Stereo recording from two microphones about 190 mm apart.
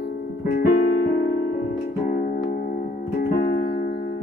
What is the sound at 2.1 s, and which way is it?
Music, 45° left (ahead or behind).